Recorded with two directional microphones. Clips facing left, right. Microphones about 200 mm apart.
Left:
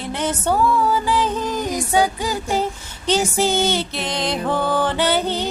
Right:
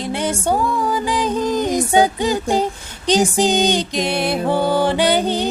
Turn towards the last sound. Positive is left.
turn(degrees=-15)  # may be behind; listen again after turning